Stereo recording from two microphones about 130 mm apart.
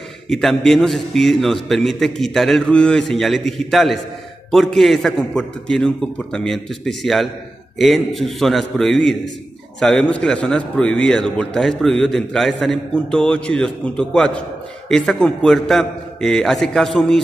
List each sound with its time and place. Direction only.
0.3 s a man's voice: centre (ahead or behind)